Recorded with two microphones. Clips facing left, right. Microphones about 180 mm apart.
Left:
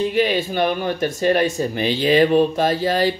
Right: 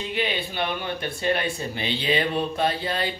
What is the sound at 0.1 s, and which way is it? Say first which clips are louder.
Speech: left 8 dB; 40° left (ahead or behind).